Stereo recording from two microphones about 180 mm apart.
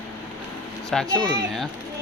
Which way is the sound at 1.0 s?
20° right (ahead or behind).